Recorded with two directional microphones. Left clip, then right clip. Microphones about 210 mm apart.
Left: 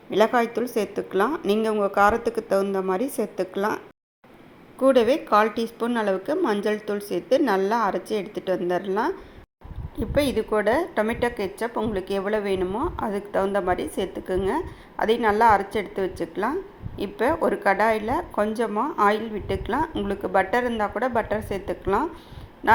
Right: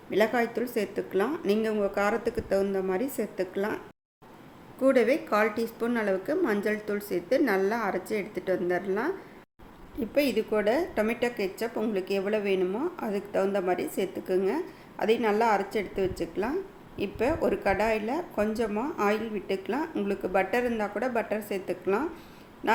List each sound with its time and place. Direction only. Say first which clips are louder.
0.1 s a woman's voice: left 5 dB; 15° left (ahead or behind)
4.8 s a woman's voice: left 5 dB; 10° left (ahead or behind)
10.2 s a woman's voice: left 4 dB; 5° left (ahead or behind)